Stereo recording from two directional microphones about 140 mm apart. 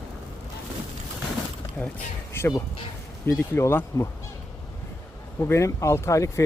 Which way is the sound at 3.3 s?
15° left (ahead or behind).